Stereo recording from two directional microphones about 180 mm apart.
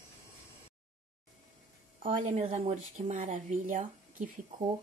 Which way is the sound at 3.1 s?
45° right (ahead or behind).